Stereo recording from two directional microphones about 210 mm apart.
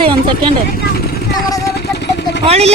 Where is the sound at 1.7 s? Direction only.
50° left (ahead or behind).